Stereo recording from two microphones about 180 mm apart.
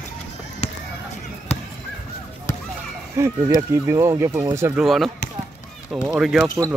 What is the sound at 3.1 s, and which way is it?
Speech, 15° right (ahead or behind).